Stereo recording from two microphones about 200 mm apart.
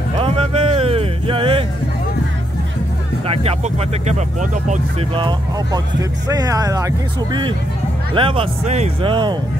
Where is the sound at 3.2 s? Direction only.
30° right (ahead or behind).